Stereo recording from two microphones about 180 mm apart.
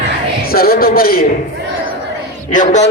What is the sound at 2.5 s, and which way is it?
Speech, 45° left (ahead or behind).